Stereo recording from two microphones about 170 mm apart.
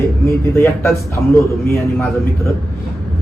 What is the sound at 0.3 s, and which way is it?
Speech, 15° left (ahead or behind).